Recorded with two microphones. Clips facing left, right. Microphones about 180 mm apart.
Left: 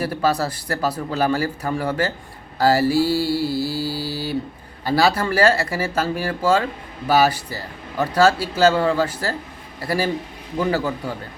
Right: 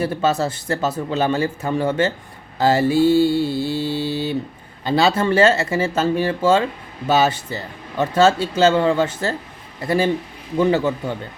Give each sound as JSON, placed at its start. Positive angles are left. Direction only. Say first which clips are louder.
{"t": 0.0, "sound": "speech", "louder": "right 2 dB", "side_deg": -25}